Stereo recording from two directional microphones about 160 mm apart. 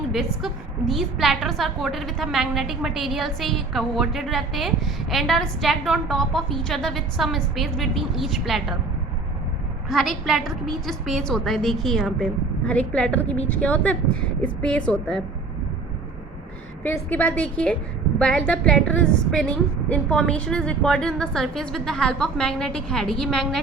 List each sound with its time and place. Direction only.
0.1 s a woman's voice: centre (ahead or behind)
9.9 s a woman's voice: centre (ahead or behind)
13.2 s speech: 40° left (ahead or behind)
13.5 s a woman's voice: 10° left (ahead or behind)
16.8 s a woman's voice: 10° left (ahead or behind)